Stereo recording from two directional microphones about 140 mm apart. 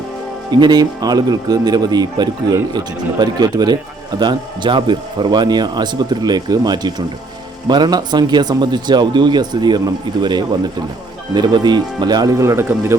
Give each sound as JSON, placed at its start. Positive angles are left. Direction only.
{"t": 0.5, "sound": "a man's voice", "side_deg": -30}